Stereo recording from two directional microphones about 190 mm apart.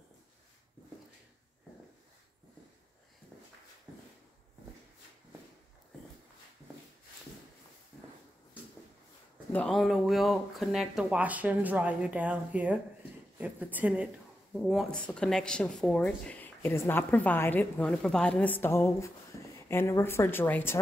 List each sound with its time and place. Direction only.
9.5 s speech: 5° left (ahead or behind)
19.3 s a sound: 15° left (ahead or behind)
19.7 s speech: 15° left (ahead or behind)